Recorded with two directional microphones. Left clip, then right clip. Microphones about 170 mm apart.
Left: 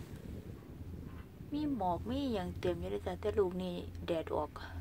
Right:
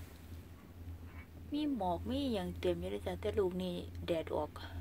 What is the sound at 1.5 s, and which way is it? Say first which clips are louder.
Speech: left 1 dB; 5° right (ahead or behind).